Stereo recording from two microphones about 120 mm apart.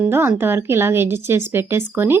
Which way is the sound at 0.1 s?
20° right (ahead or behind).